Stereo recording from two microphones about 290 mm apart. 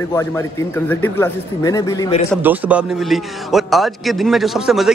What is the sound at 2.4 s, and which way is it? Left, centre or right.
A man's voice, centre.